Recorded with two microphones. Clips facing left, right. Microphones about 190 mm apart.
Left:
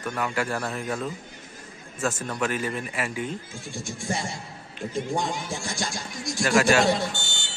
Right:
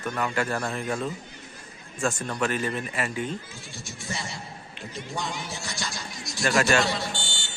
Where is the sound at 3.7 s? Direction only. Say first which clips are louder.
Left 6 dB; 50° left (ahead or behind).